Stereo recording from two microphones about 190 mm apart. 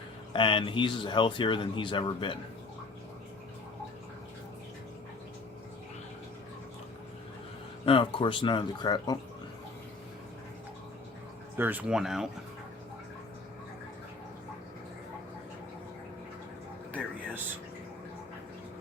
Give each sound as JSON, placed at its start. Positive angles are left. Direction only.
{"t": 0.3, "sound": "speech", "side_deg": 25}
{"t": 7.9, "sound": "speech", "side_deg": 25}
{"t": 11.5, "sound": "speech", "side_deg": -10}
{"t": 16.9, "sound": "air conditioning", "side_deg": -10}